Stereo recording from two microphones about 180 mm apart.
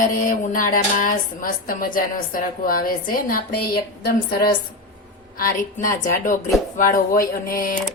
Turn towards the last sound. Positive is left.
turn(degrees=55)  # may be behind; listen again after turning